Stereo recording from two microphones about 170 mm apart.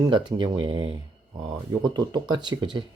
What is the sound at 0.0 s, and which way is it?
Speech, 25° right (ahead or behind).